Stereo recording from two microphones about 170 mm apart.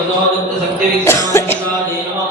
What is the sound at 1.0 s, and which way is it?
Music, 15° left (ahead or behind).